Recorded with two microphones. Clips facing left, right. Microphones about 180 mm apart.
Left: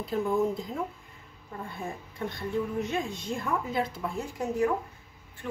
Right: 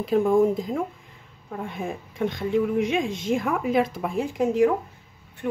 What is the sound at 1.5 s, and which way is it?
A woman's voice, 90° right.